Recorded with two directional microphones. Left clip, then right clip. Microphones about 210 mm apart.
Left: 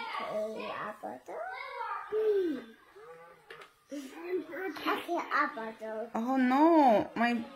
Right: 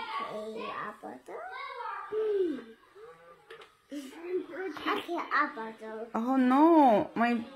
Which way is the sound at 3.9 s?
15° left (ahead or behind).